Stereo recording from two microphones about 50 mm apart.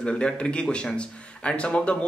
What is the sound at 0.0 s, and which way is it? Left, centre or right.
A man's voice, centre.